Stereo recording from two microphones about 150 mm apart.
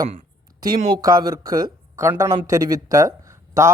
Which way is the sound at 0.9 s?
25° right (ahead or behind).